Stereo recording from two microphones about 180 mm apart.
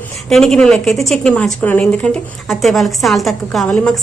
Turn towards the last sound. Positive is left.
turn(degrees=5)  # may be behind; listen again after turning